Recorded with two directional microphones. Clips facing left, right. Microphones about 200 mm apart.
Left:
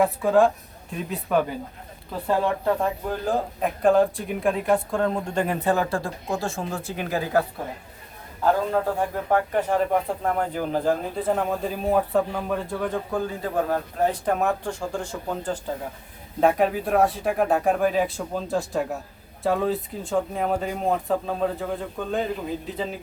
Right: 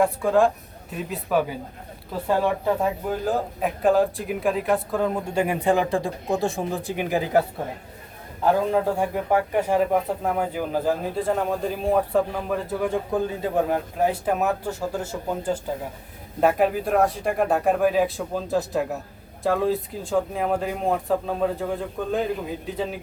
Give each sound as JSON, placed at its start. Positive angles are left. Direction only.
{"t": 0.0, "sound": "a man's voice", "side_deg": 0}
{"t": 8.4, "sound": "a man's voice", "side_deg": -15}